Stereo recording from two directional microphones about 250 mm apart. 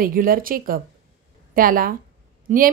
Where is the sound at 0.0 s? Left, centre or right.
Right.